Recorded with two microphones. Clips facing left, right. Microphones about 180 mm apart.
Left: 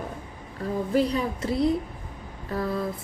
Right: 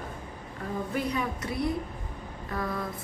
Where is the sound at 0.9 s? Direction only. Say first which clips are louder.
Left 7 dB; 30° left (ahead or behind).